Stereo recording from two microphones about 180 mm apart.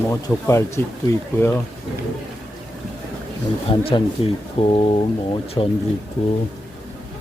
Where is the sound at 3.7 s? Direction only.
30° left (ahead or behind).